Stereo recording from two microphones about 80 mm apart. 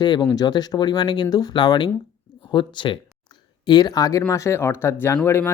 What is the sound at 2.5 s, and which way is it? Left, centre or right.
Speech, left.